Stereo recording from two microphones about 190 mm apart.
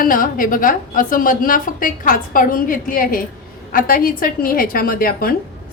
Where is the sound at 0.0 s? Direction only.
45° left (ahead or behind).